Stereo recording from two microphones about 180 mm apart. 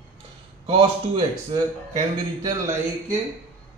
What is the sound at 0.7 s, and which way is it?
Speech, 30° right (ahead or behind).